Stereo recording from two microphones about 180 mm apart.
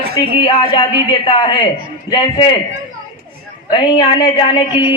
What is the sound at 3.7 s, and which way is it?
A man's voice, 25° left (ahead or behind).